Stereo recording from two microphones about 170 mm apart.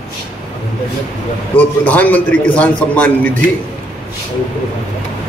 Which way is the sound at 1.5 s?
10° left (ahead or behind).